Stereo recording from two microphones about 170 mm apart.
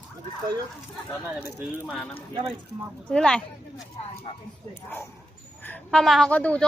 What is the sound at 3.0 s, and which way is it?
Speech, 5° left (ahead or behind).